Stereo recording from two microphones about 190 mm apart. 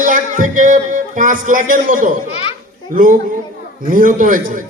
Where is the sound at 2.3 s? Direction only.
30° left (ahead or behind).